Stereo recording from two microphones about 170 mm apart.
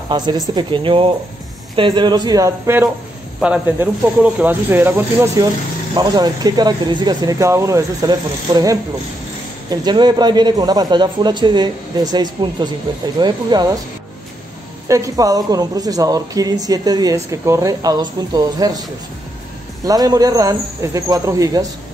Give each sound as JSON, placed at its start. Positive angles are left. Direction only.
{"t": 0.1, "sound": "a woman's voice", "side_deg": -25}
{"t": 3.3, "sound": "a woman's voice", "side_deg": -5}
{"t": 14.9, "sound": "a woman's voice", "side_deg": -20}